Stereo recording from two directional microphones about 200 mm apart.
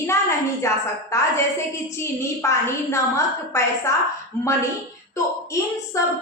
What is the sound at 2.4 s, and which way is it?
A woman's voice, 15° left (ahead or behind).